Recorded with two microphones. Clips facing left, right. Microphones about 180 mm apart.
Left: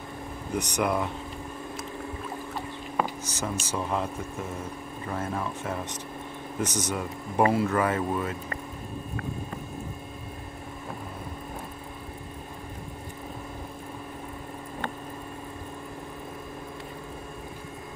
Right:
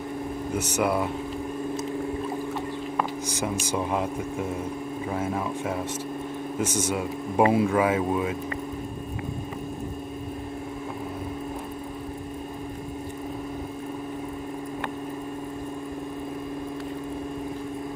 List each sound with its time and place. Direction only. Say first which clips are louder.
0.6 s speech: right 2 dB; 5° right (ahead or behind)
3.3 s speech: right 4 dB; 10° right (ahead or behind)